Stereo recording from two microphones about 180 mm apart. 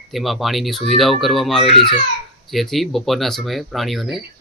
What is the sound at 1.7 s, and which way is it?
Speech, 30° left (ahead or behind).